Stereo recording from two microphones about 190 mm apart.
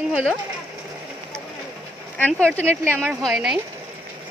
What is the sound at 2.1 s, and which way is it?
A woman's voice, 10° left (ahead or behind).